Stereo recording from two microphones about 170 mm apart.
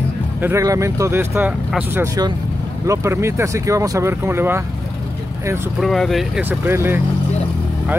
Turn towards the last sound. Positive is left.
turn(degrees=-15)  # may be behind; listen again after turning